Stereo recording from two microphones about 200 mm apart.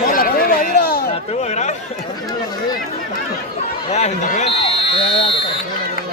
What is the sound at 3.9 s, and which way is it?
Speech, 35° left (ahead or behind).